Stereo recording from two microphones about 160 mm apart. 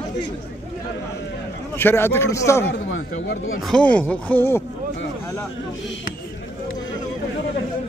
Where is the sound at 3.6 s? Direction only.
5° left (ahead or behind).